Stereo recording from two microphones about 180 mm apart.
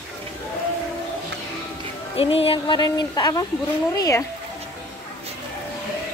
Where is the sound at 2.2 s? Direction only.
30° left (ahead or behind).